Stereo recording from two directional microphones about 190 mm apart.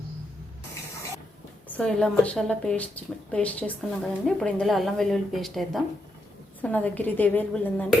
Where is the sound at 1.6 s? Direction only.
5° left (ahead or behind).